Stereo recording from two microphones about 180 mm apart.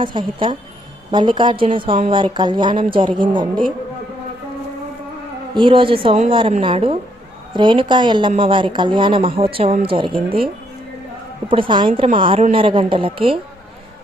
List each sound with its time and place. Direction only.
0.0 s a woman's voice: 25° right (ahead or behind)
5.5 s a woman's voice: 30° right (ahead or behind)
11.4 s a woman's voice: 30° right (ahead or behind)